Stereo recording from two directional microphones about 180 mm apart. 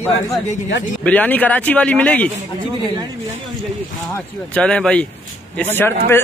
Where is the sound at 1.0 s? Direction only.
10° left (ahead or behind).